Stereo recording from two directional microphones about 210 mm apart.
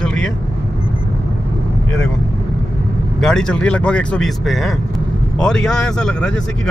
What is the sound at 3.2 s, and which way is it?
Speech, 5° left (ahead or behind).